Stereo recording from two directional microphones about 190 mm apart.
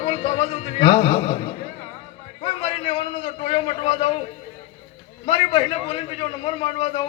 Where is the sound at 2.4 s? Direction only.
30° left (ahead or behind).